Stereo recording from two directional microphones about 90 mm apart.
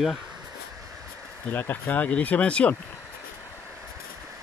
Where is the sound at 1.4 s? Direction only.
20° left (ahead or behind).